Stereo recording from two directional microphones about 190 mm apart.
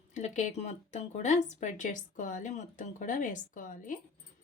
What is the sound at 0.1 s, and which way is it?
Speech, 40° left (ahead or behind).